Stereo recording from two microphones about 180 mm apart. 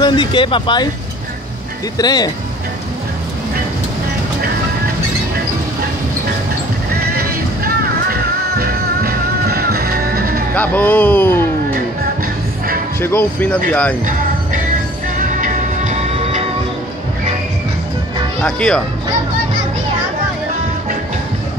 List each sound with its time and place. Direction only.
0.0 s speech: 25° left (ahead or behind)
2.0 s speech: 20° left (ahead or behind)
7.2 s music: 55° right (ahead or behind)
10.5 s speech: 10° left (ahead or behind)
13.0 s speech: 10° left (ahead or behind)
15.1 s music: 45° right (ahead or behind)
18.4 s speech: centre (ahead or behind)